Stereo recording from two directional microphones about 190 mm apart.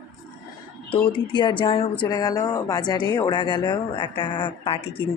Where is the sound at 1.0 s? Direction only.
25° left (ahead or behind).